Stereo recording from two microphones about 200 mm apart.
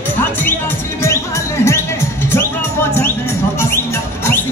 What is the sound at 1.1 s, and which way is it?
Music, 15° left (ahead or behind).